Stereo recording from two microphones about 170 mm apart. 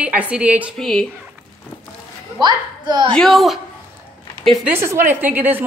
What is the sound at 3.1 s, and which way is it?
Speech, centre (ahead or behind).